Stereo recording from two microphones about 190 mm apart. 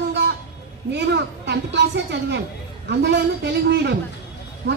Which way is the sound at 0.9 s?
65° right (ahead or behind).